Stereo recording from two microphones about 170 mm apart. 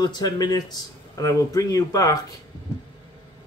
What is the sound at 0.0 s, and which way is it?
Speech, 25° left (ahead or behind).